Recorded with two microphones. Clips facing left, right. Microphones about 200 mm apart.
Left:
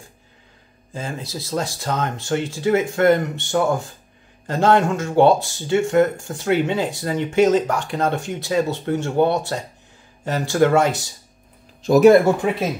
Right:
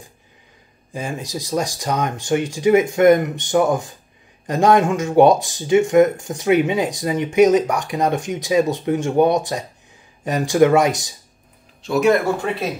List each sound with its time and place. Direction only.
0.9 s speech: 15° right (ahead or behind)
11.8 s speech: 40° left (ahead or behind)